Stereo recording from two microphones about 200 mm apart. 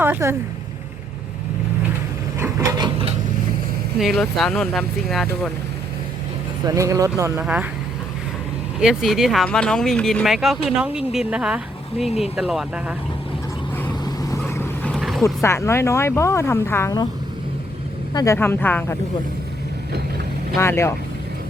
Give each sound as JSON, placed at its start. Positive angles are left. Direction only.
{"t": 0.0, "sound": "speech", "side_deg": -10}
{"t": 2.4, "sound": "wood", "side_deg": -15}
{"t": 3.9, "sound": "speech", "side_deg": 0}
{"t": 6.7, "sound": "speech", "side_deg": -15}
{"t": 8.8, "sound": "speech", "side_deg": 0}
{"t": 14.0, "sound": "vehicle", "side_deg": 15}
{"t": 14.9, "sound": "vehicle", "side_deg": 0}
{"t": 15.4, "sound": "speech", "side_deg": 15}
{"t": 18.1, "sound": "speech", "side_deg": 15}
{"t": 20.6, "sound": "speech", "side_deg": 15}